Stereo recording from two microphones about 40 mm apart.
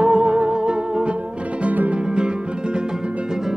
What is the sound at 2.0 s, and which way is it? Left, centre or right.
Music, right.